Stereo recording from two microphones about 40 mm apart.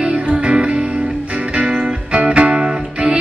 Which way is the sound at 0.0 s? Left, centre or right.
Right.